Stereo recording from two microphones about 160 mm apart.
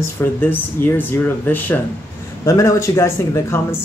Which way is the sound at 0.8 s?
15° left (ahead or behind).